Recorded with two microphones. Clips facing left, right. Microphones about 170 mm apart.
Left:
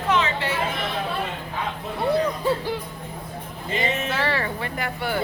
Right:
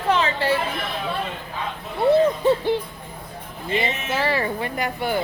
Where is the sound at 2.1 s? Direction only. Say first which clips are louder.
Right 5 dB; 25° right (ahead or behind).